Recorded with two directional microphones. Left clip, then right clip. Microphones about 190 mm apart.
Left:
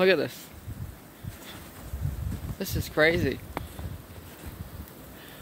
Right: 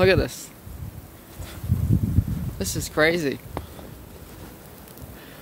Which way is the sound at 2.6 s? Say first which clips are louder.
Right 2 dB; 5° right (ahead or behind).